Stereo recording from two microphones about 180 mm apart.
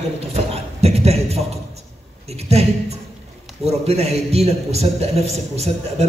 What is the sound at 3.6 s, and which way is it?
A man's voice, 35° right (ahead or behind).